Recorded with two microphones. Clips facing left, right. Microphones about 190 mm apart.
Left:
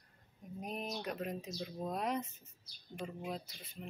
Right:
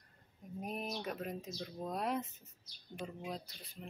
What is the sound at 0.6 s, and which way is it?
Speech, 5° right (ahead or behind).